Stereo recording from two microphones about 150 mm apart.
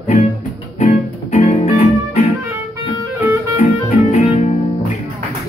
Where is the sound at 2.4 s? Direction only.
20° right (ahead or behind).